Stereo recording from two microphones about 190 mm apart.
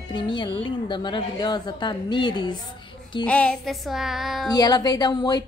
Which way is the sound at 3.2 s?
5° left (ahead or behind).